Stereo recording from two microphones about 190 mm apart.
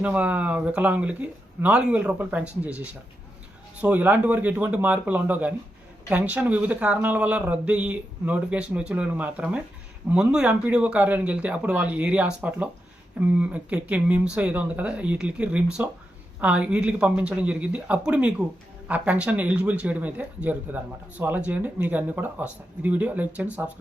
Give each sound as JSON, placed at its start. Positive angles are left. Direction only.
{"t": 0.0, "sound": "speech", "side_deg": -5}